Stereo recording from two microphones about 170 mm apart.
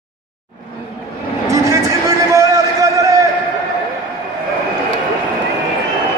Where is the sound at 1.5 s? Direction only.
20° right (ahead or behind).